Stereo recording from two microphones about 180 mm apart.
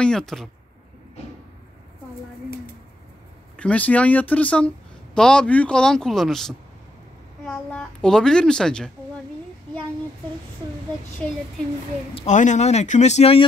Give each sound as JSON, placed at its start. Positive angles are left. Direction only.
{"t": 0.0, "sound": "speech", "side_deg": 5}
{"t": 3.5, "sound": "speech", "side_deg": 5}
{"t": 11.2, "sound": "speech", "side_deg": 0}
{"t": 12.1, "sound": "speech", "side_deg": 30}
{"t": 12.4, "sound": "speech", "side_deg": 40}